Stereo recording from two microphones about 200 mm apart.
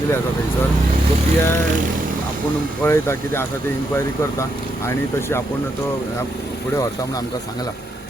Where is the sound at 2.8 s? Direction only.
10° left (ahead or behind).